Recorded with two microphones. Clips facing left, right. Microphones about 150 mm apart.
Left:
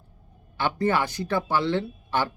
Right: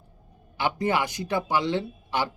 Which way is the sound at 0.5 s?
15° right (ahead or behind).